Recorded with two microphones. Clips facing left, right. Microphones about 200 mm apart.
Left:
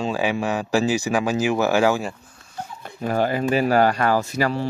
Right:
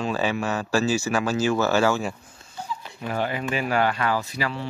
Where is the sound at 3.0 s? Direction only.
40° left (ahead or behind).